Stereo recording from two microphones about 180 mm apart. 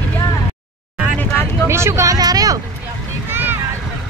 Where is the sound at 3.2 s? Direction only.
10° right (ahead or behind).